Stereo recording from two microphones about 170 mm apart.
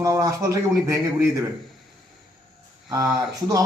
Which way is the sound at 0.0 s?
20° right (ahead or behind).